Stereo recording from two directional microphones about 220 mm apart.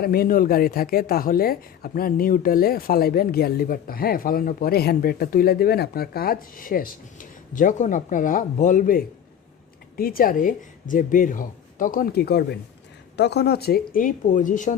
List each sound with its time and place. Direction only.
0.0 s speech: 45° left (ahead or behind)